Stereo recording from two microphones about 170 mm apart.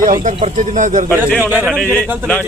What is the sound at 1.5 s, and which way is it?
Speech, 10° right (ahead or behind).